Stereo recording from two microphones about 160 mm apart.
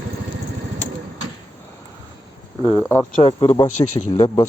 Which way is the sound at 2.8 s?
15° left (ahead or behind).